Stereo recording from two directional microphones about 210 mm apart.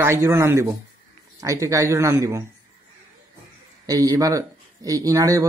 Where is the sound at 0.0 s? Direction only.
15° right (ahead or behind).